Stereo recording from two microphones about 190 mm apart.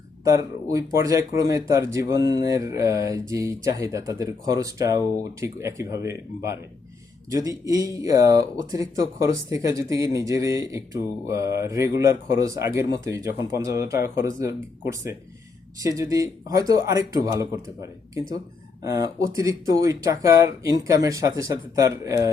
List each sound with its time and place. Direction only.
0.3 s speech: 15° right (ahead or behind)
15.8 s speech: 20° right (ahead or behind)
18.8 s speech: 15° right (ahead or behind)